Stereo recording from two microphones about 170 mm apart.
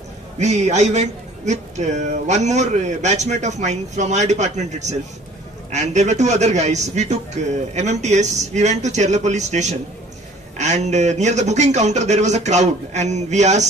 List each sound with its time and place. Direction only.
0.4 s speech: 40° right (ahead or behind)